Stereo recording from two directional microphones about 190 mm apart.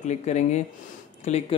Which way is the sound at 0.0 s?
35° left (ahead or behind).